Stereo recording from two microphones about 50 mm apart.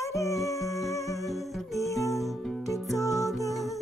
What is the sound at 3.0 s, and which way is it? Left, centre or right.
Music, left.